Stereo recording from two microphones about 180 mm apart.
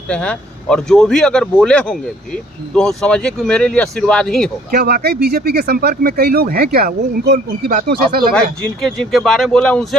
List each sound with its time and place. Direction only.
0.1 s speech: 5° left (ahead or behind)
4.6 s speech: 55° right (ahead or behind)
9.1 s speech: centre (ahead or behind)